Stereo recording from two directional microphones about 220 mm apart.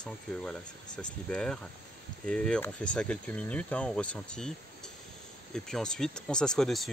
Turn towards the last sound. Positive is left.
turn(degrees=0)  # may be behind; listen again after turning